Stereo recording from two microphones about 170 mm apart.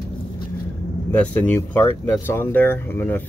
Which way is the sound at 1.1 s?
10° left (ahead or behind).